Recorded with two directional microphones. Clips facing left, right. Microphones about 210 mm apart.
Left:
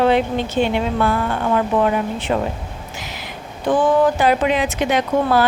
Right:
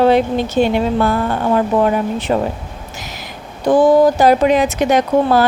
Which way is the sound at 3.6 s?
40° right (ahead or behind).